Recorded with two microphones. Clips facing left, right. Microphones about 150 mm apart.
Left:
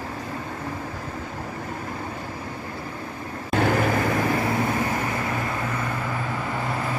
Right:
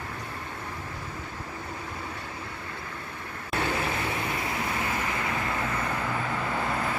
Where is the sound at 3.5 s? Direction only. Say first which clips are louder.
Left 8 dB; 80° left.